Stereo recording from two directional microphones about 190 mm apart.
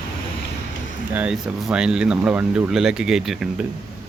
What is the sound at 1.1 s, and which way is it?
Speech, 5° right (ahead or behind).